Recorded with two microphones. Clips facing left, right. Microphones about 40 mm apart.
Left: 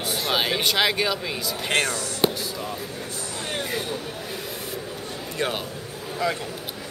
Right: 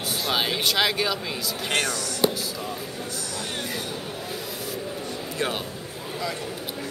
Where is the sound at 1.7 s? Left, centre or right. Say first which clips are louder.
Left 2 dB; left.